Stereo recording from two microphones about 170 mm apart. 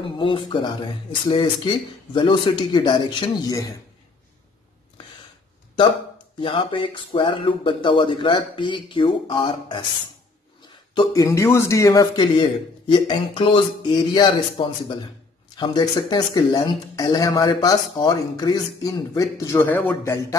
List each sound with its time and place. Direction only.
0.0 s speech: 30° left (ahead or behind)
5.8 s speech: 30° left (ahead or behind)
11.0 s speech: 20° left (ahead or behind)